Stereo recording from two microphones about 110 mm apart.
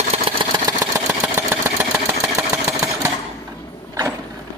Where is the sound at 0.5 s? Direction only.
35° right (ahead or behind).